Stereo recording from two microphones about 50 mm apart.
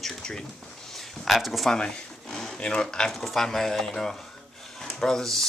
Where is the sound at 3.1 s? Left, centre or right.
Centre.